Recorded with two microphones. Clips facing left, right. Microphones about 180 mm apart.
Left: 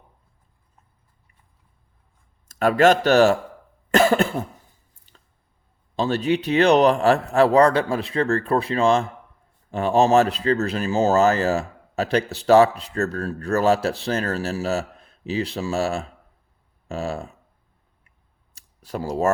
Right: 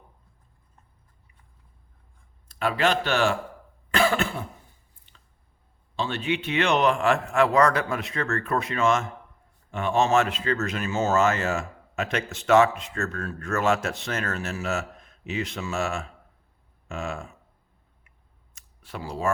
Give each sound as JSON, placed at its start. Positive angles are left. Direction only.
{"t": 2.5, "sound": "speech", "side_deg": 45}
{"t": 3.9, "sound": "cough", "side_deg": 40}
{"t": 5.1, "sound": "squish", "side_deg": 40}
{"t": 6.0, "sound": "speech", "side_deg": 40}
{"t": 18.5, "sound": "a sound", "side_deg": 40}